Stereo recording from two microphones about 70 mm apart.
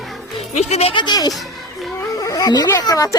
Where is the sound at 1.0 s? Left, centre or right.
Left.